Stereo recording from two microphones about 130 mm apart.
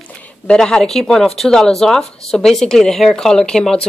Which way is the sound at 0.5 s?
5° left (ahead or behind).